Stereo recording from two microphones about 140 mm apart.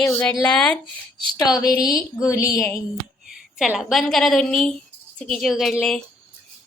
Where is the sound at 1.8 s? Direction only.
25° left (ahead or behind).